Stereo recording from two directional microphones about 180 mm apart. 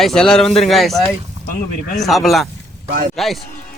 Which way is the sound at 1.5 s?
50° left (ahead or behind).